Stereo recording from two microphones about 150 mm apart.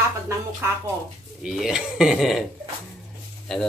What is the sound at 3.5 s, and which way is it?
Speech, 5° left (ahead or behind).